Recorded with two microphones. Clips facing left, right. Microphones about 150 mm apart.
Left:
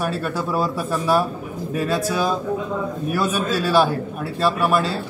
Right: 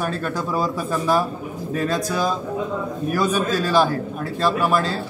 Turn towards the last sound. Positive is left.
turn(degrees=5)  # may be behind; listen again after turning